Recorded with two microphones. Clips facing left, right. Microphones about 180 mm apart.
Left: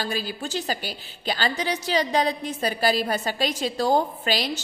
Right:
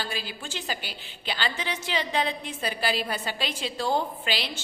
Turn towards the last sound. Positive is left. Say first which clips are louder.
# left 5 dB
turn(degrees=40)  # may be behind; listen again after turning